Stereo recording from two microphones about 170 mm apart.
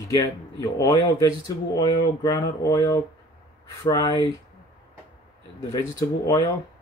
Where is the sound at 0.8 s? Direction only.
20° left (ahead or behind).